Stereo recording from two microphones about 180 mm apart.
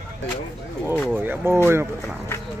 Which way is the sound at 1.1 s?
10° right (ahead or behind).